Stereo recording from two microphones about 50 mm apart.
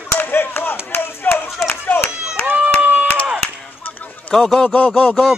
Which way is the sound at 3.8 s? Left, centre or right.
Left.